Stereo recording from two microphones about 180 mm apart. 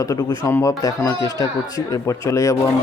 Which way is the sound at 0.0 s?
15° left (ahead or behind).